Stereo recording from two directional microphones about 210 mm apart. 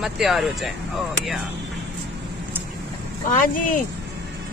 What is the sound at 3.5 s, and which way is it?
Speech, 40° left (ahead or behind).